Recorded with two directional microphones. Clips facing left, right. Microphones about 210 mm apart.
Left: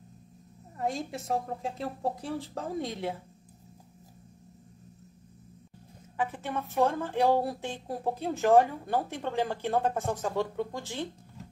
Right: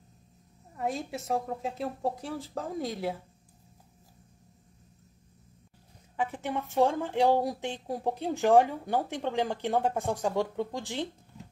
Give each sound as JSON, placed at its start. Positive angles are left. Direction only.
{"t": 0.7, "sound": "a woman's voice", "side_deg": 0}
{"t": 6.1, "sound": "speech", "side_deg": -15}